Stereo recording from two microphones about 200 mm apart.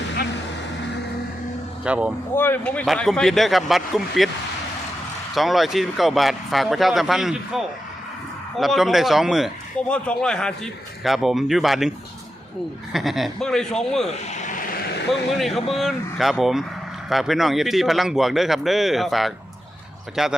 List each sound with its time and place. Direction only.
1.8 s speech: 5° right (ahead or behind)
2.3 s speech: 10° left (ahead or behind)
5.3 s speech: centre (ahead or behind)
14.3 s vehicle: 40° left (ahead or behind)
15.1 s speech: centre (ahead or behind)